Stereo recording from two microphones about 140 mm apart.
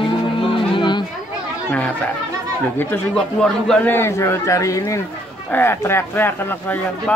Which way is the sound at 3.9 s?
20° left (ahead or behind).